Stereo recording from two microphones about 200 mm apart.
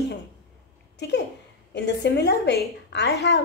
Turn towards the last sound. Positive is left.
turn(degrees=60)  # may be behind; listen again after turning